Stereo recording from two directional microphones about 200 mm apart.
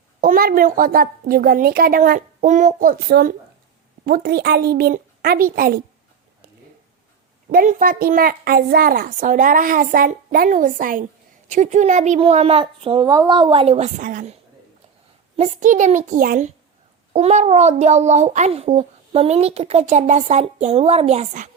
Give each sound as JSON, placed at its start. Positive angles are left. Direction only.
{"t": 0.2, "sound": "a woman's voice", "side_deg": -45}
{"t": 7.5, "sound": "a child's voice", "side_deg": -45}
{"t": 15.4, "sound": "a child's voice", "side_deg": -40}